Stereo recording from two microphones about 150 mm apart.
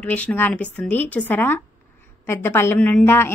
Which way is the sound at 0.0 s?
10° left (ahead or behind).